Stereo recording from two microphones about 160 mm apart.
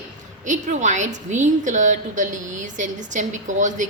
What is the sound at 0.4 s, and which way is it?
A woman's voice, 50° right (ahead or behind).